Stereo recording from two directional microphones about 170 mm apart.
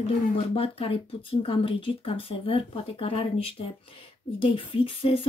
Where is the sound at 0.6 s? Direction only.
35° left (ahead or behind).